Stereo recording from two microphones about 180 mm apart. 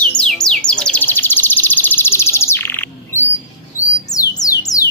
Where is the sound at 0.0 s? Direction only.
5° left (ahead or behind).